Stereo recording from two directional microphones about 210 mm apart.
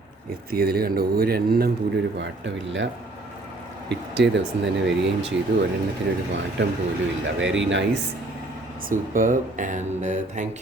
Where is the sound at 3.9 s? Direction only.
55° right (ahead or behind).